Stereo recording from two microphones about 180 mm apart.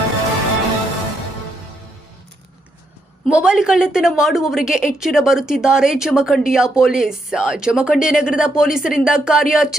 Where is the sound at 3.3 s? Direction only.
5° right (ahead or behind).